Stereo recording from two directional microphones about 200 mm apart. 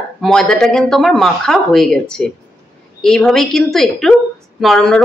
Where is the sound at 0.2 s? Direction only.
5° left (ahead or behind).